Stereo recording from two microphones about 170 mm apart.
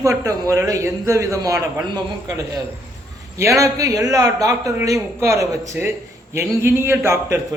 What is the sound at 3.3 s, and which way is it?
A man's voice, 20° right (ahead or behind).